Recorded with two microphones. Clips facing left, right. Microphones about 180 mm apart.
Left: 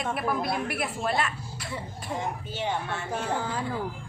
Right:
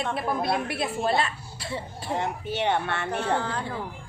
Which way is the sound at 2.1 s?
65° right (ahead or behind).